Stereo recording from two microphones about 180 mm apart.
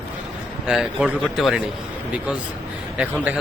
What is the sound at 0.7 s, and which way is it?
Speech, 5° right (ahead or behind).